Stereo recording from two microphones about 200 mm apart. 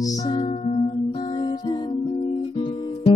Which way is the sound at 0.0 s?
20° left (ahead or behind).